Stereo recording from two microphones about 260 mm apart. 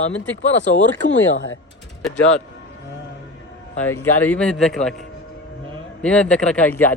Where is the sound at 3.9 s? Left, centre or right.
Centre.